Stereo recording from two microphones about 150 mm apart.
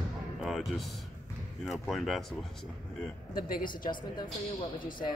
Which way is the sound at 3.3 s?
75° left (ahead or behind).